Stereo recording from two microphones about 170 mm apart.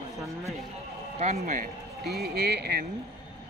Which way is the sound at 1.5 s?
60° right (ahead or behind).